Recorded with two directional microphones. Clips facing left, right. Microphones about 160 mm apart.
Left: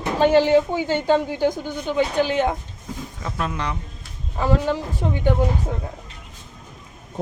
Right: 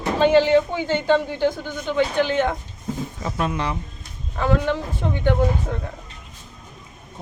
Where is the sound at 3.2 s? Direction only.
5° right (ahead or behind).